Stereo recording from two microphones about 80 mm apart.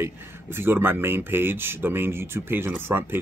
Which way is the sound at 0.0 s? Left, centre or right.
Right.